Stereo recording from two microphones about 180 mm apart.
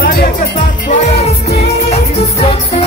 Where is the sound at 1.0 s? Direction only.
35° left (ahead or behind).